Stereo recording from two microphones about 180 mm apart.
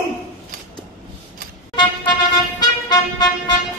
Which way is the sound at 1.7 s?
25° left (ahead or behind).